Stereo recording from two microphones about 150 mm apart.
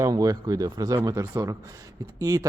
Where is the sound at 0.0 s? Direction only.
25° right (ahead or behind).